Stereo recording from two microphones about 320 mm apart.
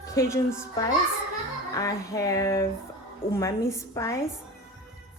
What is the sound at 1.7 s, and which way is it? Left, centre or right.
A woman's voice, centre.